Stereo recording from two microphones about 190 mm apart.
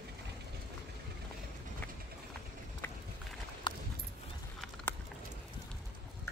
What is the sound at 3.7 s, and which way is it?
Clip-clop, 25° left (ahead or behind).